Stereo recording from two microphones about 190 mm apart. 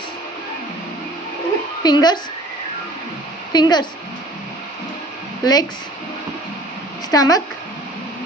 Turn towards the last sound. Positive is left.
turn(degrees=20)  # may be behind; listen again after turning